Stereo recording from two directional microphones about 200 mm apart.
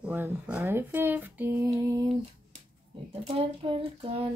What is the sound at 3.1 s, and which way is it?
Female singing, 25° right (ahead or behind).